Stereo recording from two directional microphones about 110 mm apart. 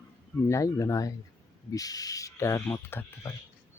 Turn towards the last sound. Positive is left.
turn(degrees=20)  # may be behind; listen again after turning